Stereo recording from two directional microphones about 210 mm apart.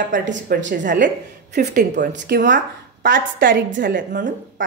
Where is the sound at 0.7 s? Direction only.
40° right (ahead or behind).